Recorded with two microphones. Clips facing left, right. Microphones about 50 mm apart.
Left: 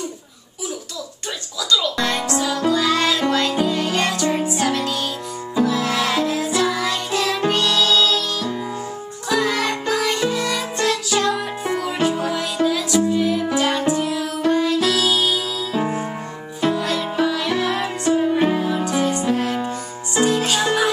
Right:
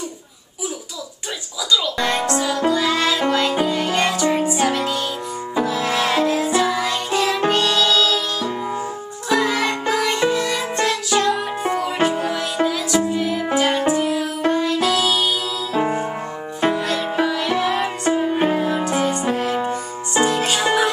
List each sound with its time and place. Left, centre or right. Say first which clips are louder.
1.7 s music: even; centre
9.3 s music: right 1 dB; centre
19.5 s music: right 2 dB; right
20.2 s music: left 2 dB; centre